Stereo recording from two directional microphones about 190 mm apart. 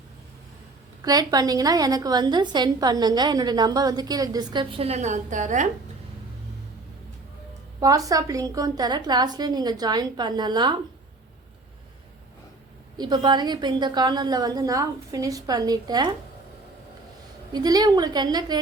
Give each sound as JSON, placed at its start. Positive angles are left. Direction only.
{"t": 1.0, "sound": "a woman's voice", "side_deg": -20}
{"t": 7.8, "sound": "a woman's voice", "side_deg": -20}
{"t": 13.0, "sound": "a woman's voice", "side_deg": -20}
{"t": 17.5, "sound": "a woman's voice", "side_deg": -20}